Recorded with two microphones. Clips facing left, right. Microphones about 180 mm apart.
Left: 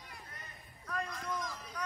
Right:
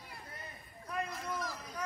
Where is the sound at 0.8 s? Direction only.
25° right (ahead or behind).